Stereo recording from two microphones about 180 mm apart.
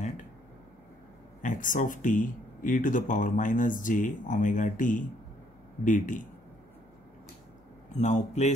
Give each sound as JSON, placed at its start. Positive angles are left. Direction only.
{"t": 1.4, "sound": "speech", "side_deg": 45}
{"t": 7.9, "sound": "a man's voice", "side_deg": 40}